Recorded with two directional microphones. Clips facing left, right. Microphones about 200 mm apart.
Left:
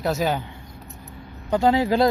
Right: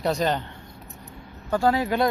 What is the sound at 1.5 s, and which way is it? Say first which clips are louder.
Speech: left 3 dB; 20° left (ahead or behind).